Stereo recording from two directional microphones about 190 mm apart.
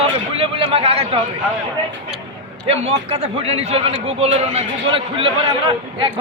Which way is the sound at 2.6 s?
35° right (ahead or behind).